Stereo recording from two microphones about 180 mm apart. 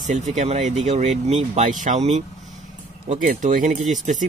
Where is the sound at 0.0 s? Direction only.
40° right (ahead or behind).